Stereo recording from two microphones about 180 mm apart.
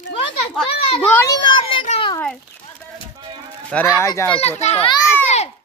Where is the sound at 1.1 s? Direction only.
10° left (ahead or behind).